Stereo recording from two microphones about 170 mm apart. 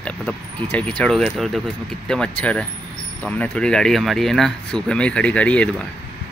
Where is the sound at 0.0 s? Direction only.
5° left (ahead or behind).